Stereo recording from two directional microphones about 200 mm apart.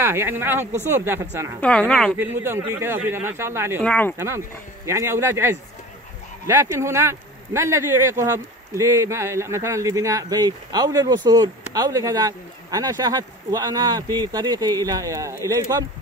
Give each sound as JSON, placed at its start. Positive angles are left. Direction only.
{"t": 0.0, "sound": "speech", "side_deg": -10}
{"t": 1.6, "sound": "a woman's voice", "side_deg": 5}
{"t": 2.1, "sound": "speech", "side_deg": -10}
{"t": 3.8, "sound": "a woman's voice", "side_deg": 5}
{"t": 4.8, "sound": "speech", "side_deg": -15}